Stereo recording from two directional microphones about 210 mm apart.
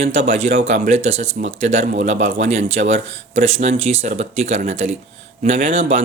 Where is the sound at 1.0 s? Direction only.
65° right (ahead or behind).